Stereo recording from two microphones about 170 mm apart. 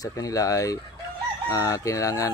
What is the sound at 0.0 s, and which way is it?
Speech, 20° left (ahead or behind).